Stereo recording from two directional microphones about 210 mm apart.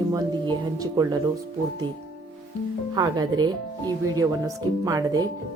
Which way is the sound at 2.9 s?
20° right (ahead or behind).